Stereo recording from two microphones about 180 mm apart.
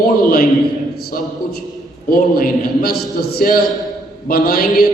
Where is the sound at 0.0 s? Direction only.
55° left (ahead or behind).